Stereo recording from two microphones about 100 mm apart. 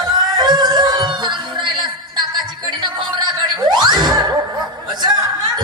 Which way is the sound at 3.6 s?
45° right (ahead or behind).